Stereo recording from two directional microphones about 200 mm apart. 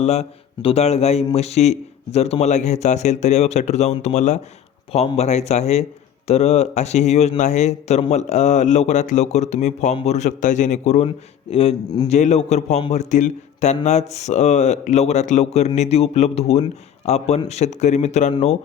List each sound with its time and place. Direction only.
0.0 s a man's voice: 30° left (ahead or behind)